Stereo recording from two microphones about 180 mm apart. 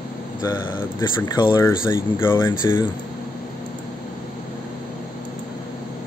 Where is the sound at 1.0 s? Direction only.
25° left (ahead or behind).